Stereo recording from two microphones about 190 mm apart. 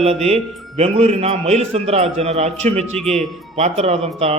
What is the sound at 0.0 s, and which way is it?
A man's voice, 35° right (ahead or behind).